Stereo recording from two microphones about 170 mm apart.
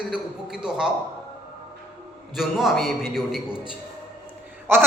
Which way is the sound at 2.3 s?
Centre (ahead or behind).